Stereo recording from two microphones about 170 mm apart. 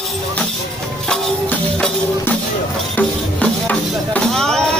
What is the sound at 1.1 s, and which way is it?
Music, 5° left (ahead or behind).